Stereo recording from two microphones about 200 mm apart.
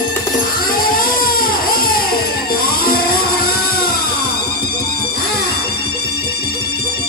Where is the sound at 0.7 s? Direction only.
45° left (ahead or behind).